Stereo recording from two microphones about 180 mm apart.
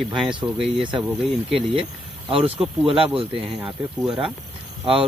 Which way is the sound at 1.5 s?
30° right (ahead or behind).